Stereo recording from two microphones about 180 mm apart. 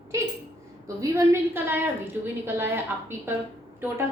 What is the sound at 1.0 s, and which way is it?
A woman's voice, 15° right (ahead or behind).